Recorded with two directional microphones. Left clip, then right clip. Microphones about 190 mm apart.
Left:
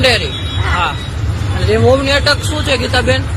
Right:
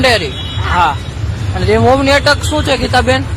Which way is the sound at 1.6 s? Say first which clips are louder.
Right 2 dB; 35° right (ahead or behind).